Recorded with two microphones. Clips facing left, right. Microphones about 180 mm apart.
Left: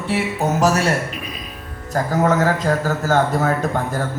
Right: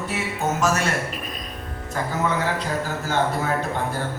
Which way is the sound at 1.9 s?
40° left (ahead or behind).